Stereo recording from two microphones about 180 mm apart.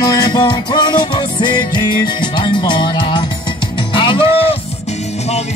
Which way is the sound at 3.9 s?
30° left (ahead or behind).